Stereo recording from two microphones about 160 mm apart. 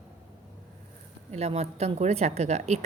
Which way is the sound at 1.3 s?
40° right (ahead or behind).